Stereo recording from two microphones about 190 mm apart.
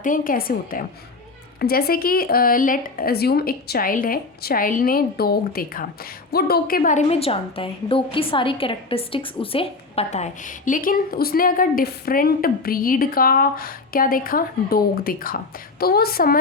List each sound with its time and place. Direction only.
0.0 s a woman's voice: 45° left (ahead or behind)